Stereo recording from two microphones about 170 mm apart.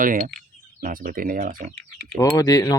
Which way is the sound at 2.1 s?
20° left (ahead or behind).